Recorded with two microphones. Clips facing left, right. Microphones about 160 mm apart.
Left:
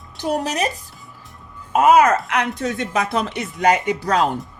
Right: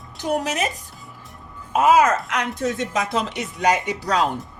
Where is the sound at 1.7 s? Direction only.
50° left (ahead or behind).